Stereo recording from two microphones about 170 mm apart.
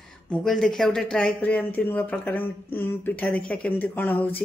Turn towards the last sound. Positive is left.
turn(degrees=10)  # may be behind; listen again after turning